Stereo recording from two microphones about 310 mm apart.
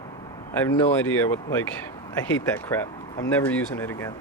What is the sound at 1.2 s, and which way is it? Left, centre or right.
Speech, centre.